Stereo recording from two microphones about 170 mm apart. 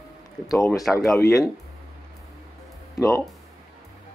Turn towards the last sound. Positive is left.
turn(degrees=20)  # may be behind; listen again after turning